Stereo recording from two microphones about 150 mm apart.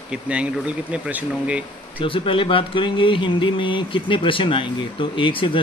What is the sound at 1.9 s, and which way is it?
Speech, 35° left (ahead or behind).